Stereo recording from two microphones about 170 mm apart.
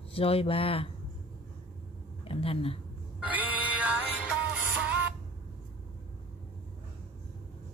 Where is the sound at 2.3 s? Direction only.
35° left (ahead or behind).